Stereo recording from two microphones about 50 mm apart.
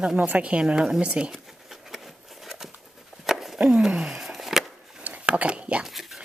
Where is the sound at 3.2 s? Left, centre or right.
Centre.